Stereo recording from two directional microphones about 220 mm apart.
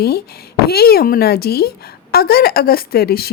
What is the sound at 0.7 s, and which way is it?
A woman's voice, 45° left (ahead or behind).